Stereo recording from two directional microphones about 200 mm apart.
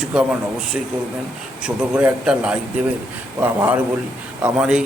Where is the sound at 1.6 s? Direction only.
5° right (ahead or behind).